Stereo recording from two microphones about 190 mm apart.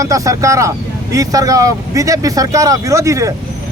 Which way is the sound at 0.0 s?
15° right (ahead or behind).